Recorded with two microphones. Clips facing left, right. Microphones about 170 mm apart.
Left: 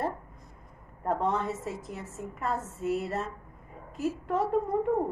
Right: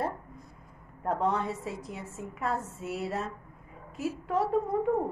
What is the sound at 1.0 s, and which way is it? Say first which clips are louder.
A woman's voice: even; centre (ahead or behind).